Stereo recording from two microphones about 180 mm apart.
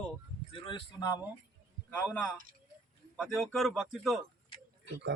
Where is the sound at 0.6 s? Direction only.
25° left (ahead or behind).